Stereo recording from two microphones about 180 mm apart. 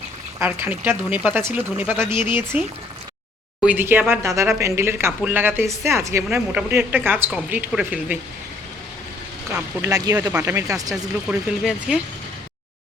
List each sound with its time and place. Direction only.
0.3 s speech: 10° right (ahead or behind)
9.8 s speech: 20° right (ahead or behind)
11.3 s speech: 5° right (ahead or behind)